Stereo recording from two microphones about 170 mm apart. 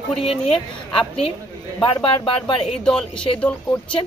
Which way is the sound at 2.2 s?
30° left (ahead or behind).